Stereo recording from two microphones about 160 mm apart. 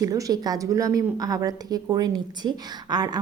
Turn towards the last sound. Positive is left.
turn(degrees=-25)  # may be behind; listen again after turning